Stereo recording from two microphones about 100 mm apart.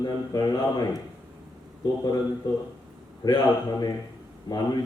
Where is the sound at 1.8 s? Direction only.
40° left (ahead or behind).